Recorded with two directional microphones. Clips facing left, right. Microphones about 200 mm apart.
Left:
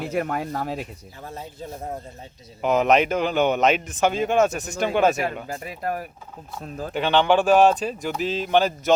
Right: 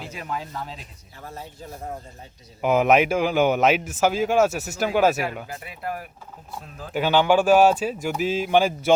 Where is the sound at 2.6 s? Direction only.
10° right (ahead or behind).